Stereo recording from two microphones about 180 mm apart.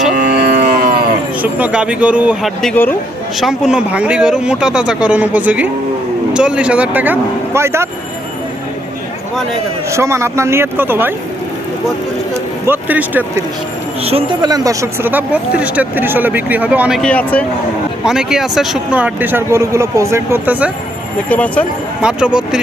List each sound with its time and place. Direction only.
0.1 s a sound: 45° right (ahead or behind)
0.3 s a sound: 60° right (ahead or behind)
1.4 s speech: 10° right (ahead or behind)
9.9 s speech: 15° right (ahead or behind)
12.6 s speech: 10° right (ahead or behind)
14.0 s speech: 30° right (ahead or behind); by 17.0 s 5° right (ahead or behind)
17.0 s speech: 5° left (ahead or behind)
18.0 s speech: 5° right (ahead or behind)
21.2 s speech: 10° left (ahead or behind)
22.0 s speech: 5° right (ahead or behind)